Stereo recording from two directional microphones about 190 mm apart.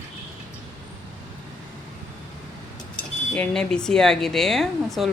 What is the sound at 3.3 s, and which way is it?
Speech, 5° left (ahead or behind).